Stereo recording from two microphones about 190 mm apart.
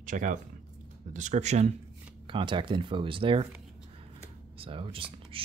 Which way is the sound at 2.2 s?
25° right (ahead or behind).